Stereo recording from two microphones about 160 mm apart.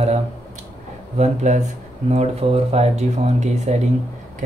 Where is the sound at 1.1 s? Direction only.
45° right (ahead or behind).